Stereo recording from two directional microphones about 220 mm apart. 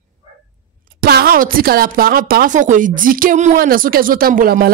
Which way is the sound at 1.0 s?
45° right (ahead or behind).